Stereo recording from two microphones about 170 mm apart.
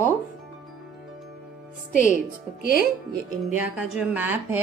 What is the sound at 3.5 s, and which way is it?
Speech, 5° right (ahead or behind).